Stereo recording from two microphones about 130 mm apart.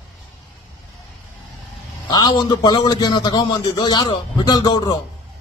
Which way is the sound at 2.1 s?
35° left (ahead or behind).